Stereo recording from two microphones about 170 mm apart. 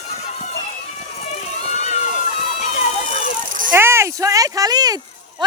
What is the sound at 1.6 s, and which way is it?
Run, 40° left (ahead or behind).